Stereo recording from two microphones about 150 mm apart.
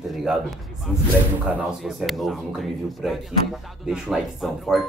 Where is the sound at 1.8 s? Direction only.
Centre (ahead or behind).